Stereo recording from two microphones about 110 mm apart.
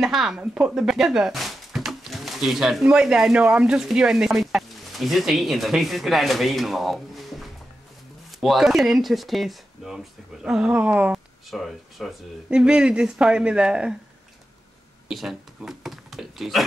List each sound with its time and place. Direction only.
0.0 s speech: 5° right (ahead or behind)
11.5 s speech: centre (ahead or behind)
15.0 s speech: 5° right (ahead or behind)